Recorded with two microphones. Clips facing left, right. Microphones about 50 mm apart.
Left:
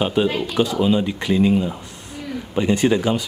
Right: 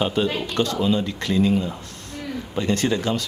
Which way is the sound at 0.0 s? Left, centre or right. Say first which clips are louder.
Left 3 dB; centre.